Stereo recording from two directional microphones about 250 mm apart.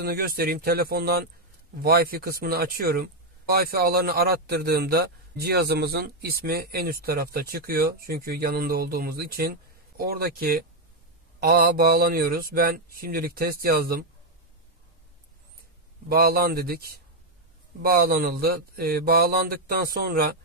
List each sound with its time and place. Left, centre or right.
0.0 s speech: right
16.1 s speech: right